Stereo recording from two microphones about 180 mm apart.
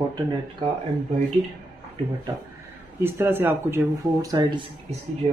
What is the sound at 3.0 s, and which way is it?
Speech, 15° right (ahead or behind).